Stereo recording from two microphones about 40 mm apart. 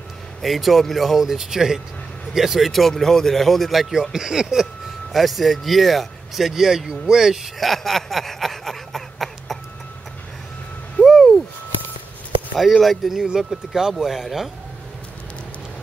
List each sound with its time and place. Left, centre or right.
0.4 s speech: centre
2.7 s speech: centre
4.1 s speech: centre
5.1 s speech: centre
7.6 s a sound: centre
11.1 s a sound: centre
12.7 s speech: centre
13.0 s speech: centre